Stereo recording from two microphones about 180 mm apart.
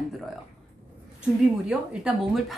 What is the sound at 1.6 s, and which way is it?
Speech, 5° right (ahead or behind).